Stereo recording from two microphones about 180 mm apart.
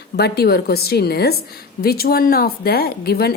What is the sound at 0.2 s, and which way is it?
A woman's voice, 60° left (ahead or behind).